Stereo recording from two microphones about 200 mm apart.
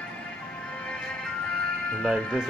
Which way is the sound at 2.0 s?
Centre (ahead or behind).